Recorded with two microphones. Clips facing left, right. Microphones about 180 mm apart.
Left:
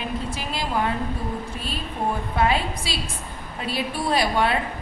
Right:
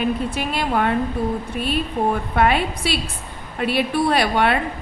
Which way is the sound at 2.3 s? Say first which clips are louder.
Right 3 dB; 60° right (ahead or behind).